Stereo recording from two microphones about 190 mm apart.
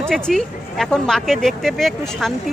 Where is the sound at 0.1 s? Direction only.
Centre (ahead or behind).